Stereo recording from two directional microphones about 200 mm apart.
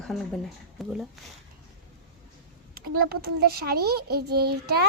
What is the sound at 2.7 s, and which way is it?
A child's voice, 50° right (ahead or behind).